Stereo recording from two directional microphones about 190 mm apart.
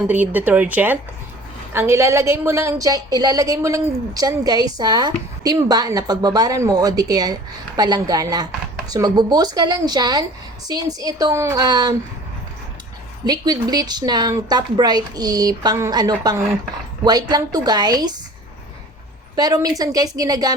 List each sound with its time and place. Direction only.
0.1 s a woman's voice: 10° right (ahead or behind)
13.2 s a woman's voice: 20° right (ahead or behind)
19.4 s a woman's voice: 20° right (ahead or behind)